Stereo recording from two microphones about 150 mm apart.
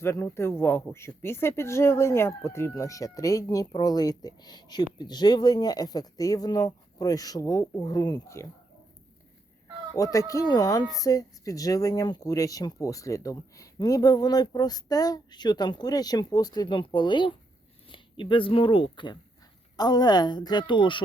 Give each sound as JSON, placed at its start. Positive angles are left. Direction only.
{"t": 0.0, "sound": "speech", "side_deg": 20}
{"t": 9.9, "sound": "speech", "side_deg": 20}